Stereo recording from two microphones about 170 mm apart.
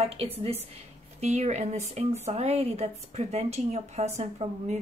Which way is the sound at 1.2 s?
40° right (ahead or behind).